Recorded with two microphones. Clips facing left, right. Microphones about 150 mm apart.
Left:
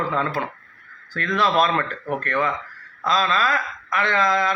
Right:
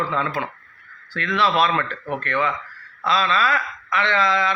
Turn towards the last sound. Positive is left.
turn(degrees=45)  # may be behind; listen again after turning